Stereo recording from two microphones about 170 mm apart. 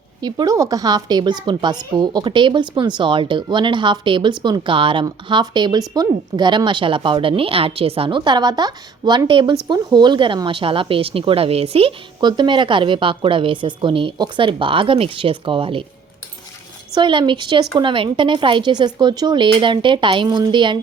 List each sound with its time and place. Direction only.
0.2 s a woman's voice: 25° right (ahead or behind)
16.9 s a woman's voice: 30° right (ahead or behind)